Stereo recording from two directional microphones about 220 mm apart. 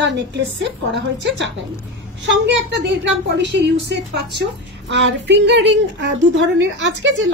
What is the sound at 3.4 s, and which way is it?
A woman's voice, 50° right (ahead or behind).